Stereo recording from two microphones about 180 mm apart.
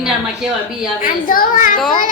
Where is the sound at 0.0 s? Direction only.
5° right (ahead or behind).